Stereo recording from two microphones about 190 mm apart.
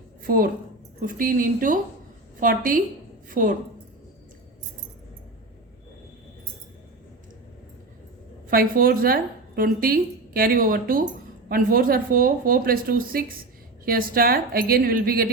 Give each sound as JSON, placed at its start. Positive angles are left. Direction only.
{"t": 0.3, "sound": "a woman's voice", "side_deg": -50}
{"t": 8.4, "sound": "a woman's voice", "side_deg": -50}